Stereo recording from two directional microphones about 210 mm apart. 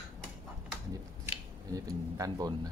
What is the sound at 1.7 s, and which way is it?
Speech, 15° right (ahead or behind).